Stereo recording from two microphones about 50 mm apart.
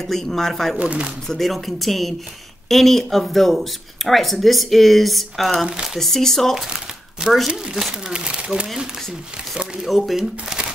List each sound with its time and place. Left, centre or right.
0.0 s speech: centre
0.7 s speech: right
1.3 s speech: centre
6.7 s crumpling: centre
7.4 s speech: centre
9.8 s speech: centre
10.1 s speech: centre